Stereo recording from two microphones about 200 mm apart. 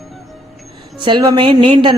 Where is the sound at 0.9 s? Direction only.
20° right (ahead or behind).